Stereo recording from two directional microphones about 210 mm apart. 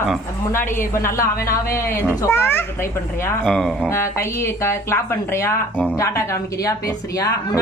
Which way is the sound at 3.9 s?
15° left (ahead or behind).